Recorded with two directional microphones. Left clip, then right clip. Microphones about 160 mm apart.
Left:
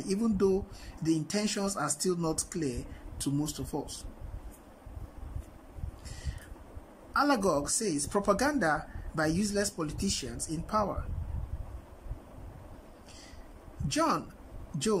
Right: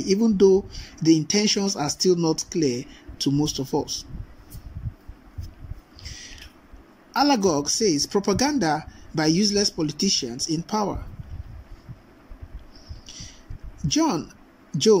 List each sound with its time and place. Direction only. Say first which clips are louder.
0.0 s speech: right 11 dB; 15° right (ahead or behind)
7.1 s speech: right 7 dB; 15° right (ahead or behind)
13.8 s speech: right 6 dB; 15° right (ahead or behind)